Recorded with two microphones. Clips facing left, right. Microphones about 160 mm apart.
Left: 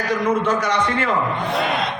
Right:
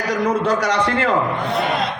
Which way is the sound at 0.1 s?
35° right (ahead or behind).